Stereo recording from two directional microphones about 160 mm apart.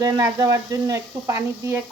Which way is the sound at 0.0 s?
20° right (ahead or behind).